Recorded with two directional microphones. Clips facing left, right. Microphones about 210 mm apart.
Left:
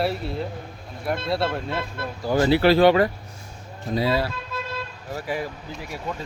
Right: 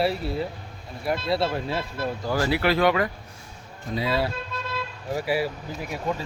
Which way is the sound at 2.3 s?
25° left (ahead or behind).